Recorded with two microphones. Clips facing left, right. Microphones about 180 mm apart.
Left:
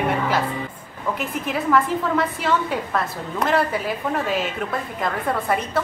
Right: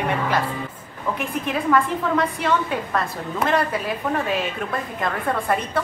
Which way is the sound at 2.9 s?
5° left (ahead or behind).